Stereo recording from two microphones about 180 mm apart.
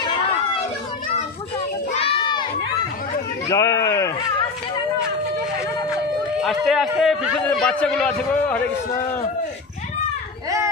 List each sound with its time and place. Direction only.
1.9 s crowd: 30° left (ahead or behind)
3.4 s speech: 20° left (ahead or behind)
6.4 s a man's voice: centre (ahead or behind)